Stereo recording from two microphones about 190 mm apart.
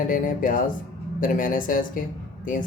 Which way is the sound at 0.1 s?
45° left (ahead or behind).